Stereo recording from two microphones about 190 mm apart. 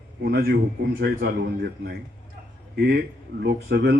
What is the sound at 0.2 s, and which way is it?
A man's voice, 60° right (ahead or behind).